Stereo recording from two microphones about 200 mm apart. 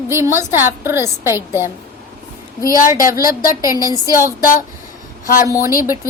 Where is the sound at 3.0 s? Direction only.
45° left (ahead or behind).